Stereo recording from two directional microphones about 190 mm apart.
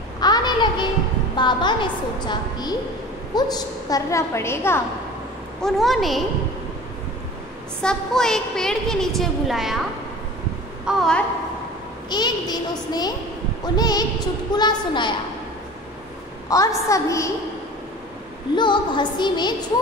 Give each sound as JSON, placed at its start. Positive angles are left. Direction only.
{"t": 0.2, "sound": "a sound", "side_deg": 20}
{"t": 1.3, "sound": "a woman's voice", "side_deg": 25}
{"t": 5.6, "sound": "a woman's voice", "side_deg": 0}
{"t": 7.8, "sound": "a woman's voice", "side_deg": 5}
{"t": 10.9, "sound": "a woman's voice", "side_deg": 5}
{"t": 12.1, "sound": "a woman's voice", "side_deg": 20}
{"t": 16.4, "sound": "a woman's voice", "side_deg": 20}
{"t": 18.6, "sound": "a woman's voice", "side_deg": 25}